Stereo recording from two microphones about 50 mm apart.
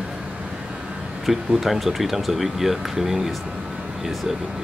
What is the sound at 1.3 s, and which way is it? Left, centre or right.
Speech, centre.